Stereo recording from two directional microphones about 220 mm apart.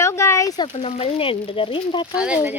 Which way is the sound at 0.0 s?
10° left (ahead or behind).